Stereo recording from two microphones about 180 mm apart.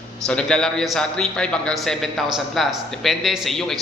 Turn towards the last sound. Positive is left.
turn(degrees=0)  # may be behind; listen again after turning